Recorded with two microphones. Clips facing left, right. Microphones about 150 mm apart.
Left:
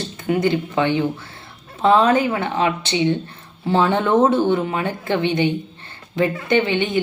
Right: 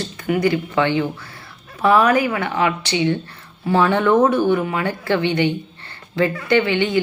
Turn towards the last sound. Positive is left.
turn(degrees=20)  # may be behind; listen again after turning